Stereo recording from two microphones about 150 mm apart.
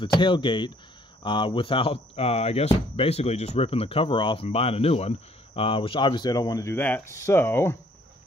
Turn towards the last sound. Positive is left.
turn(degrees=15)  # may be behind; listen again after turning